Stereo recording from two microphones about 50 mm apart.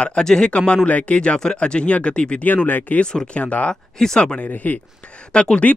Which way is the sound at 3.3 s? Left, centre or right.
Left.